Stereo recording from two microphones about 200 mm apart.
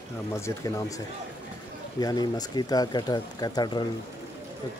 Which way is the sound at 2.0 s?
20° left (ahead or behind).